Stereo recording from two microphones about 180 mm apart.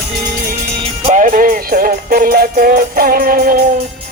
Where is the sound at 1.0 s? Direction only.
45° right (ahead or behind).